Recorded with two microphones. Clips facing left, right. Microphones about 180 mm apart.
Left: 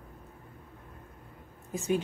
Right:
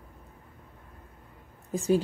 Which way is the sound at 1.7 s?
35° right (ahead or behind).